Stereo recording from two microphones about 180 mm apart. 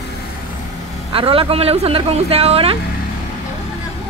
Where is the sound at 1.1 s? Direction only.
30° right (ahead or behind).